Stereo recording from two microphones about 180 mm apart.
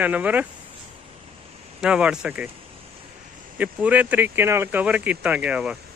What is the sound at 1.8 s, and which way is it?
Speech, 5° right (ahead or behind).